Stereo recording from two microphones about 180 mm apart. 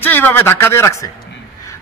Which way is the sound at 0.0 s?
10° left (ahead or behind).